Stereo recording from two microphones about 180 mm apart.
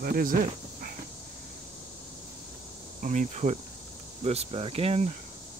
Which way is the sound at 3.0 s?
45° right (ahead or behind).